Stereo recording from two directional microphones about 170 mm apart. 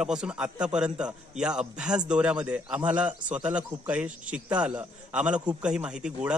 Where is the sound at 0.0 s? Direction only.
5° right (ahead or behind).